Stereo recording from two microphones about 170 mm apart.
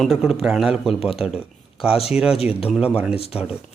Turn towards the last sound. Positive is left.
turn(degrees=35)  # may be behind; listen again after turning